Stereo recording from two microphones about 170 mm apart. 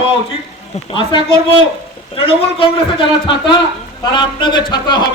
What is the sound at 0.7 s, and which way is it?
A man's voice, 30° left (ahead or behind).